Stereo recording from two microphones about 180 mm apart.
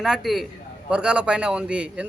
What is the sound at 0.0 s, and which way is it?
A man's voice, centre (ahead or behind).